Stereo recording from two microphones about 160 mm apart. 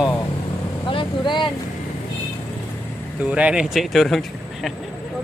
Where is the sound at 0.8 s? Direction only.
30° left (ahead or behind).